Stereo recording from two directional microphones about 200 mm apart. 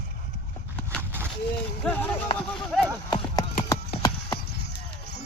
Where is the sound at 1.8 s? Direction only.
10° left (ahead or behind).